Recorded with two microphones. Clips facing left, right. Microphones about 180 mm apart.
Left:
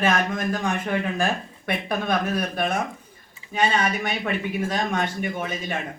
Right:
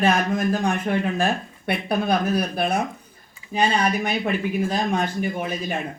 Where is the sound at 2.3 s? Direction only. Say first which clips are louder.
Right 2 dB; 35° right (ahead or behind).